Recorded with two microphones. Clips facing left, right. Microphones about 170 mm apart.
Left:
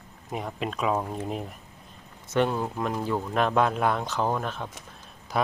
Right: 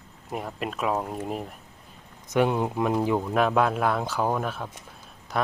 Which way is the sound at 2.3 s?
15° right (ahead or behind).